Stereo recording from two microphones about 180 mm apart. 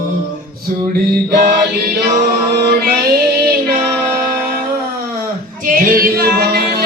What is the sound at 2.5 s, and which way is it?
Music, 60° right (ahead or behind).